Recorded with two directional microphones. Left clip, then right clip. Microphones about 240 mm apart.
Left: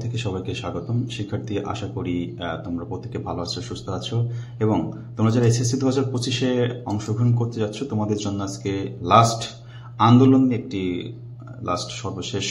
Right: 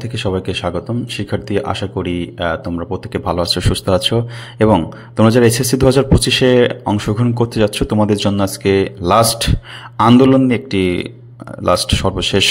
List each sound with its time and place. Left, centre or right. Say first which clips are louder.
0.0 s speech: right 10 dB; right